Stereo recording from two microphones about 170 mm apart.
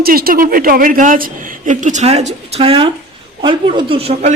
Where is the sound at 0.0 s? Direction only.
60° right (ahead or behind); by 4.4 s 40° right (ahead or behind).